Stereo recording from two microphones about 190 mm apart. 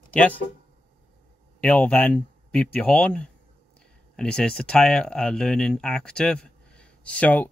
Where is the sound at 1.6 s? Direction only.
5° left (ahead or behind).